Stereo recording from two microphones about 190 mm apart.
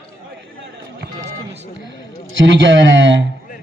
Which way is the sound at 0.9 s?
65° right (ahead or behind).